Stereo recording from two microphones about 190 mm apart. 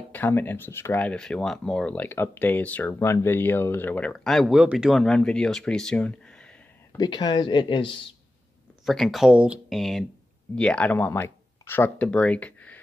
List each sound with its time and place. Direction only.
0.1 s speech: 10° left (ahead or behind)
6.9 s speech: 20° left (ahead or behind)
8.8 s speech: centre (ahead or behind)